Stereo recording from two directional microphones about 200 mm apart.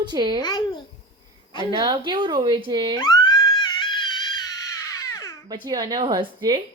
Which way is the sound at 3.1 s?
20° left (ahead or behind).